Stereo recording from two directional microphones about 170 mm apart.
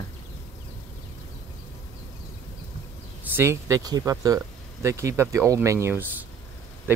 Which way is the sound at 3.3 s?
15° right (ahead or behind).